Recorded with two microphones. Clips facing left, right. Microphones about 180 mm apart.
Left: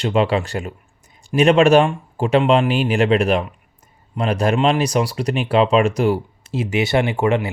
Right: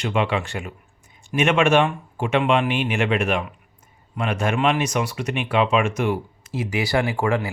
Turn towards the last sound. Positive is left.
turn(degrees=25)  # may be behind; listen again after turning